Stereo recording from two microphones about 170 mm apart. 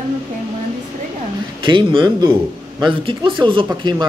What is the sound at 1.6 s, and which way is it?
Speech, 30° right (ahead or behind).